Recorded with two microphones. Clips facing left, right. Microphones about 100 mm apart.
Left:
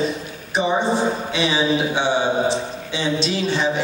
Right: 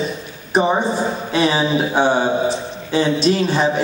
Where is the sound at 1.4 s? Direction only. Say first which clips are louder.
Right 4 dB; 45° right (ahead or behind).